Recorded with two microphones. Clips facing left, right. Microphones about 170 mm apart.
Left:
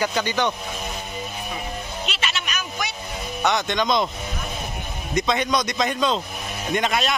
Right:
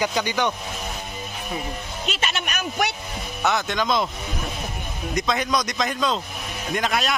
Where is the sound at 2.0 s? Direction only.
45° right (ahead or behind).